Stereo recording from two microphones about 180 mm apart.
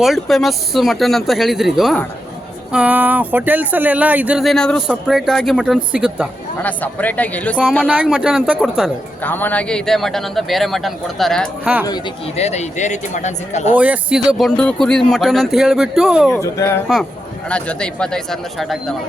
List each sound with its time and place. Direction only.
0.0 s speech: centre (ahead or behind)
6.6 s speech: 10° left (ahead or behind)
7.9 s speech: 5° right (ahead or behind)
9.2 s speech: 10° left (ahead or behind)
12.4 s speech: 40° left (ahead or behind)
13.7 s speech: 5° right (ahead or behind)
16.3 s speech: 15° left (ahead or behind)
17.5 s speech: 5° left (ahead or behind)